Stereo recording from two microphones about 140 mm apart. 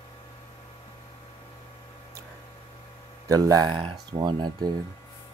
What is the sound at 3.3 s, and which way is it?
Speech, 25° right (ahead or behind).